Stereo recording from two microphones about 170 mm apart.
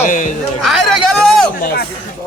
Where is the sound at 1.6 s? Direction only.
65° left (ahead or behind).